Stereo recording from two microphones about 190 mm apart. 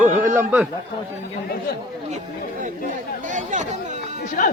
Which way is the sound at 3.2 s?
40° right (ahead or behind).